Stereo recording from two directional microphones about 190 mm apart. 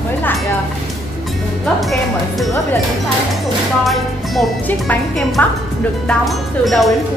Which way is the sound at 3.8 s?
Centre (ahead or behind).